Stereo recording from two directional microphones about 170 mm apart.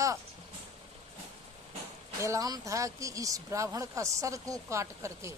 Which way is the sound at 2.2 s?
20° right (ahead or behind).